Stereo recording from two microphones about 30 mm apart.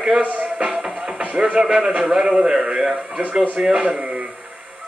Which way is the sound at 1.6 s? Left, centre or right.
Centre.